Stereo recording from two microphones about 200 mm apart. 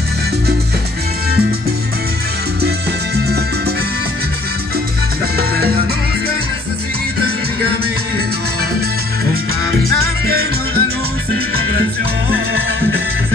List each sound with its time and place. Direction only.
3.2 s music: 55° right (ahead or behind)
10.2 s music: 50° right (ahead or behind)
12.3 s music: 50° right (ahead or behind)